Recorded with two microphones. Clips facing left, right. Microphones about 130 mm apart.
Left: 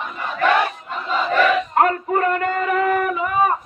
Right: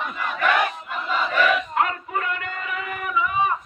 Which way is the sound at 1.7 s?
45° left (ahead or behind).